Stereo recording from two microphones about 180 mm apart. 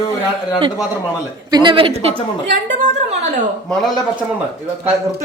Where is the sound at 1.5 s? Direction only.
25° right (ahead or behind); by 3.2 s 40° right (ahead or behind).